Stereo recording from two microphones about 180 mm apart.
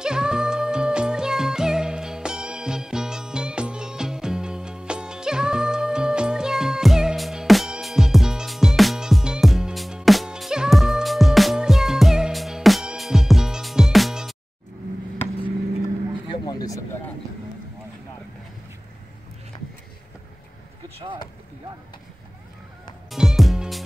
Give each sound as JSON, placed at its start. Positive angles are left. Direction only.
{"t": 0.0, "sound": "music", "side_deg": -5}
{"t": 16.3, "sound": "a sound", "side_deg": 25}
{"t": 23.0, "sound": "music", "side_deg": 0}